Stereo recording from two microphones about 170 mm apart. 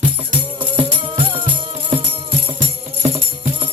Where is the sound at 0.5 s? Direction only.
30° right (ahead or behind).